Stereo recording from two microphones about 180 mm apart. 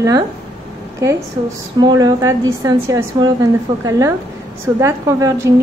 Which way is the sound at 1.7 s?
20° right (ahead or behind).